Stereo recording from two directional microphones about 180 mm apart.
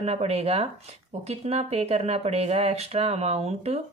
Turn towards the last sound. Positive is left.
turn(degrees=-35)  # may be behind; listen again after turning